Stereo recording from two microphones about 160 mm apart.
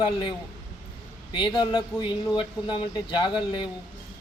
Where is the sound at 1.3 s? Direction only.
30° left (ahead or behind).